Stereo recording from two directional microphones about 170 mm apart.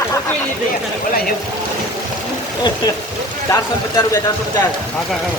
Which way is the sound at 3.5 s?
20° left (ahead or behind).